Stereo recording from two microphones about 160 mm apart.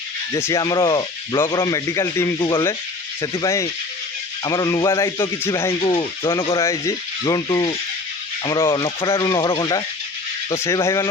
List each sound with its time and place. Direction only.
0.3 s speech: 20° left (ahead or behind)
5.8 s speech: 30° left (ahead or behind)
6.6 s speech: 20° left (ahead or behind)